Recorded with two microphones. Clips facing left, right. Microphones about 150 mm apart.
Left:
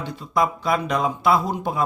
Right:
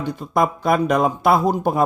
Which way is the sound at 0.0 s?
50° right (ahead or behind).